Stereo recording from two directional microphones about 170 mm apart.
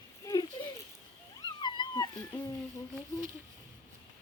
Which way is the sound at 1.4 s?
25° left (ahead or behind).